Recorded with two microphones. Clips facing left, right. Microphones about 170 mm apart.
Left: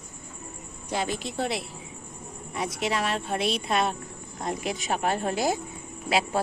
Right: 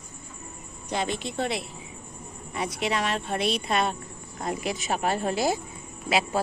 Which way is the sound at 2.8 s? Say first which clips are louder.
Even; centre (ahead or behind).